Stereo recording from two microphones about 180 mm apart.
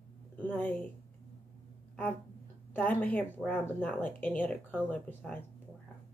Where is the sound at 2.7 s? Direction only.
10° left (ahead or behind).